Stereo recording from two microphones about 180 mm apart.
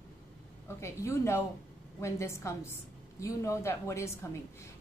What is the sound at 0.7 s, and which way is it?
A woman's voice, 15° left (ahead or behind).